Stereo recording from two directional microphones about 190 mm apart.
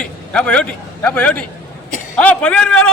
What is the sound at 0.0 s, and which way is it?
A man's voice, 5° left (ahead or behind).